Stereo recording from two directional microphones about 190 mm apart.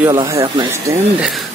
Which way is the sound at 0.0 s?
15° right (ahead or behind).